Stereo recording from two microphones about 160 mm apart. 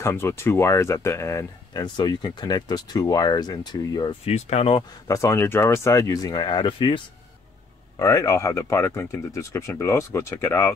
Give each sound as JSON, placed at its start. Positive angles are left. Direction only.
{"t": 0.0, "sound": "speech", "side_deg": 15}
{"t": 4.3, "sound": "speech", "side_deg": 40}
{"t": 5.0, "sound": "speech", "side_deg": 20}
{"t": 8.0, "sound": "speech", "side_deg": 20}